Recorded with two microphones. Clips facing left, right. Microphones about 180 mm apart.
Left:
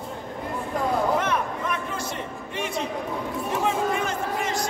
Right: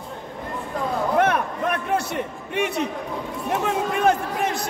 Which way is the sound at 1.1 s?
60° right (ahead or behind).